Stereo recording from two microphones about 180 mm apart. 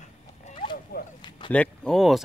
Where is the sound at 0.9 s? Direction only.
60° left (ahead or behind).